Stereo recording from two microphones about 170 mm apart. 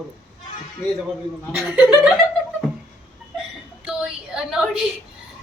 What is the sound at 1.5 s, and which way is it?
Speech, 10° right (ahead or behind).